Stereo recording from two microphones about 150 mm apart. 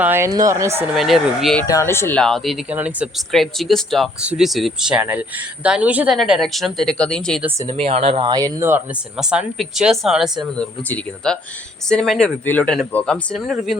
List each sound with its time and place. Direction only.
0.0 s speech: 15° right (ahead or behind)
0.3 s speech: 25° right (ahead or behind)
0.9 s speech: centre (ahead or behind)
1.6 s speech: 20° left (ahead or behind)
2.2 s speech: centre (ahead or behind)
7.8 s speech: 40° right (ahead or behind); by 8.8 s 20° right (ahead or behind)
9.1 s speech: 5° right (ahead or behind)
10.5 s speech: 10° left (ahead or behind)